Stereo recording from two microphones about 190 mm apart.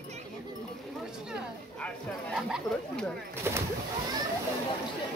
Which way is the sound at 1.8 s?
5° left (ahead or behind).